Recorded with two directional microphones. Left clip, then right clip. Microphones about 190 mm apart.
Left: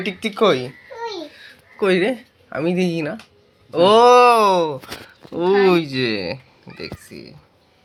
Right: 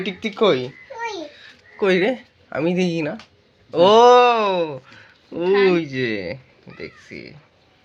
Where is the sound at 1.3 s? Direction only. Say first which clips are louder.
Left 1 dB; 5° right (ahead or behind).